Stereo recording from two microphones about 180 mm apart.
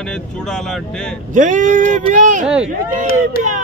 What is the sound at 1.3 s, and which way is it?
Speech, 45° right (ahead or behind).